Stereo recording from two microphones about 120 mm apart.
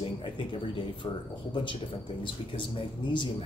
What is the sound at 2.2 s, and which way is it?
Speech, 45° left (ahead or behind).